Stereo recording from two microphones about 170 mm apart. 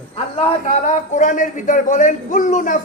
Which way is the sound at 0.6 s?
45° left (ahead or behind).